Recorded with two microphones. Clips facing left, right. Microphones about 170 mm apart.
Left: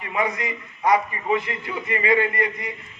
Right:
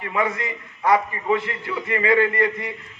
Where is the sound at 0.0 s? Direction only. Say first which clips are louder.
Right 1 dB; 20° left (ahead or behind).